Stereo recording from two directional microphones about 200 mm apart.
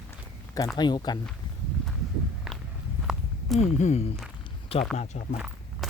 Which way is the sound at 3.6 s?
35° left (ahead or behind).